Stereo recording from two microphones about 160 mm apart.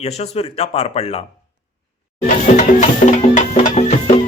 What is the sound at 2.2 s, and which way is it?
Music, 50° left (ahead or behind).